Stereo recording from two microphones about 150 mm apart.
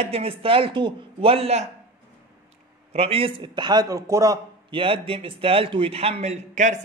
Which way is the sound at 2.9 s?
40° right (ahead or behind).